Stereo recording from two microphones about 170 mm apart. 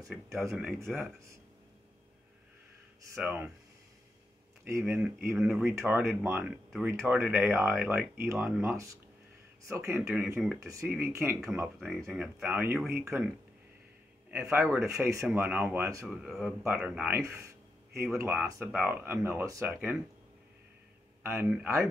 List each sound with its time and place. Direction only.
0.1 s speech: centre (ahead or behind)
3.2 s speech: 10° right (ahead or behind)
4.6 s speech: 15° right (ahead or behind)
11.6 s speech: centre (ahead or behind)
14.3 s speech: 15° right (ahead or behind)
16.1 s speech: centre (ahead or behind)
17.2 s a sound: 15° right (ahead or behind)
18.1 s speech: 15° right (ahead or behind)
21.2 s speech: 15° right (ahead or behind)